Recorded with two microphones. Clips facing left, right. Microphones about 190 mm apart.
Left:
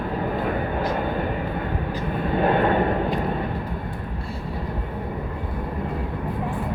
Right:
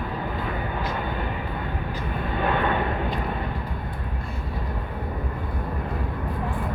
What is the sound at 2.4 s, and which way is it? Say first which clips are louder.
Vehicle: left 4 dB; 40° left (ahead or behind).